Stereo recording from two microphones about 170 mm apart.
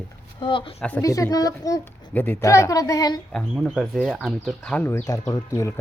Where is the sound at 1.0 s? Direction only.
20° left (ahead or behind).